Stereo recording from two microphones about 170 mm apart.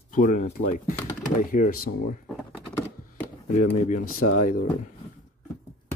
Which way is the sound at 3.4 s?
45° left (ahead or behind).